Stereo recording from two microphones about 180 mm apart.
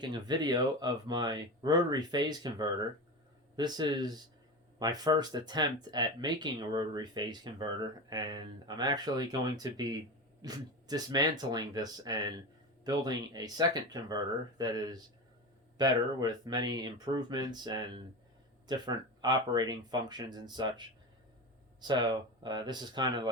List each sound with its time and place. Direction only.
0.0 s speech: 25° right (ahead or behind)